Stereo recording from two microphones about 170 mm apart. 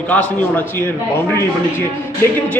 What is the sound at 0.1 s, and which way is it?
Speech, 10° left (ahead or behind).